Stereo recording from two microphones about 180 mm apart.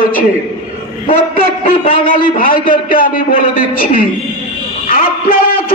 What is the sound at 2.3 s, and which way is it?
Speech, 50° left (ahead or behind).